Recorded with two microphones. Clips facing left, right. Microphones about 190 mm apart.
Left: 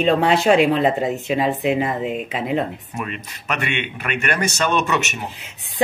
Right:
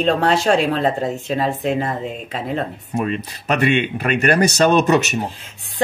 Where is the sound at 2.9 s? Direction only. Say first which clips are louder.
Right 11 dB; 35° right (ahead or behind).